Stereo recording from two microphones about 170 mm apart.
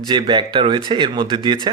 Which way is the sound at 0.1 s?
25° right (ahead or behind).